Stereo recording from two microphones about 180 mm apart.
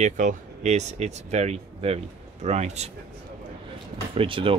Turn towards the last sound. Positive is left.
turn(degrees=-30)  # may be behind; listen again after turning